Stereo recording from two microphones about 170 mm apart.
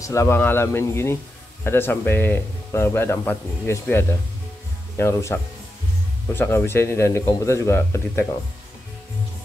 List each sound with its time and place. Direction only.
0.0 s speech: 20° left (ahead or behind)